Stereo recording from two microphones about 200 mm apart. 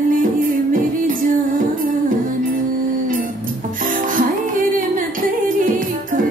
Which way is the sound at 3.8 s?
40° right (ahead or behind).